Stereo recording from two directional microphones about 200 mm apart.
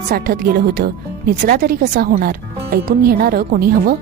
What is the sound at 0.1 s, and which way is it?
Speech, 50° right (ahead or behind).